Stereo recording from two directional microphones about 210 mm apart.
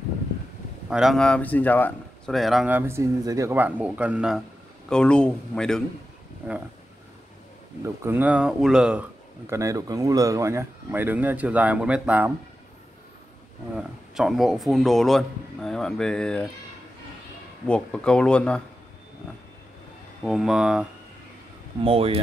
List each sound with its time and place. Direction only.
0.8 s speech: 5° right (ahead or behind)
7.8 s speech: 10° right (ahead or behind)
9.5 s speech: 15° right (ahead or behind)
13.7 s speech: centre (ahead or behind)
17.6 s speech: 5° left (ahead or behind)
20.2 s speech: centre (ahead or behind)
21.8 s speech: 25° right (ahead or behind)